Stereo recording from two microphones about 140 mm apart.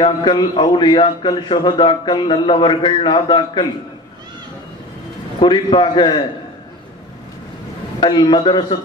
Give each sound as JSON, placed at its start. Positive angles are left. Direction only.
{"t": 0.0, "sound": "a man's voice", "side_deg": 35}
{"t": 5.4, "sound": "a man's voice", "side_deg": 35}
{"t": 8.0, "sound": "a man's voice", "side_deg": 35}